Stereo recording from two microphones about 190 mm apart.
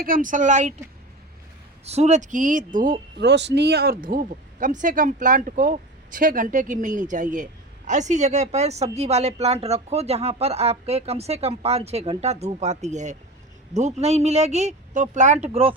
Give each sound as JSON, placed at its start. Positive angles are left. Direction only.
{"t": 0.0, "sound": "a woman's voice", "side_deg": -45}
{"t": 1.8, "sound": "speech", "side_deg": -35}